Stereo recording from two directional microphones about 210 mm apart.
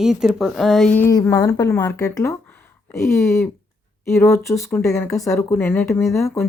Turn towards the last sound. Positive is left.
turn(degrees=15)  # may be behind; listen again after turning